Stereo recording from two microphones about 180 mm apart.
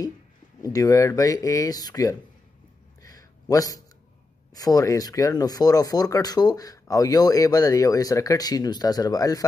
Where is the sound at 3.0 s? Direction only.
20° left (ahead or behind).